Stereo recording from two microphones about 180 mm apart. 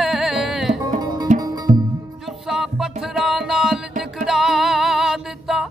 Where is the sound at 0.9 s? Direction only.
20° right (ahead or behind).